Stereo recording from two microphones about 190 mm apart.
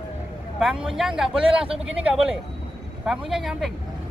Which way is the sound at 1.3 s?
30° right (ahead or behind).